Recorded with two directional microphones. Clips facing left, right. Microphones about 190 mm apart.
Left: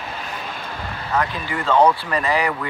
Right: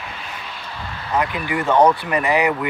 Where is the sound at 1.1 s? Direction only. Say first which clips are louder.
Right 2 dB; 15° right (ahead or behind).